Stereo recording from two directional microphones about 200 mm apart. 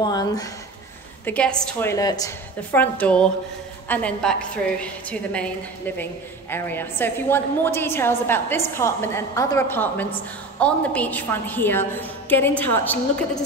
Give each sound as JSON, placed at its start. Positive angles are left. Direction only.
{"t": 0.0, "sound": "a woman's voice", "side_deg": 20}
{"t": 1.2, "sound": "a woman's voice", "side_deg": 5}
{"t": 6.5, "sound": "a woman's voice", "side_deg": 10}